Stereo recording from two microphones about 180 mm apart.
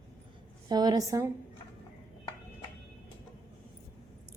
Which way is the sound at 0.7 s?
20° right (ahead or behind).